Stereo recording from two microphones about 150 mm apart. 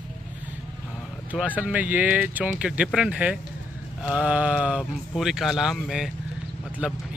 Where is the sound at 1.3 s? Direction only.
10° right (ahead or behind).